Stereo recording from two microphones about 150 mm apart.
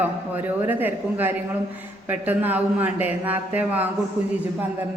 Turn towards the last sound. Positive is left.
turn(degrees=-10)  # may be behind; listen again after turning